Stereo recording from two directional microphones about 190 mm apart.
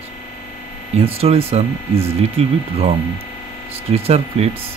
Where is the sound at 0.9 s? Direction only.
30° right (ahead or behind).